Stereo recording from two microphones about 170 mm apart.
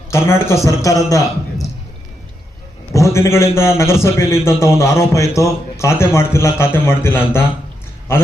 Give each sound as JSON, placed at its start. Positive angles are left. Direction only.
{"t": 0.1, "sound": "a man's voice", "side_deg": 15}
{"t": 2.9, "sound": "a man's voice", "side_deg": 15}